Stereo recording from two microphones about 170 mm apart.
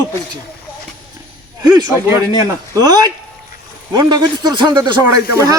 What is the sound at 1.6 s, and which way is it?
Speech, 20° right (ahead or behind).